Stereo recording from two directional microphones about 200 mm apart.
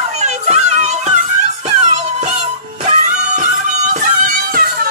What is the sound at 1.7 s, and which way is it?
Music, 35° right (ahead or behind).